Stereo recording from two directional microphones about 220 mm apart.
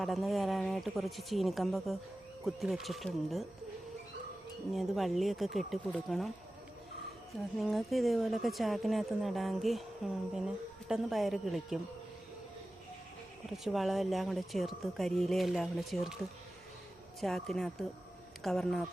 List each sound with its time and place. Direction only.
0.0 s speech: centre (ahead or behind)
4.7 s speech: centre (ahead or behind)
7.6 s speech: centre (ahead or behind)
13.5 s speech: centre (ahead or behind)
17.2 s speech: centre (ahead or behind)